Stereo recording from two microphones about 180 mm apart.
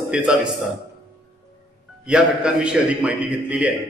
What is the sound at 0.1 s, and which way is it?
Speech, 5° right (ahead or behind).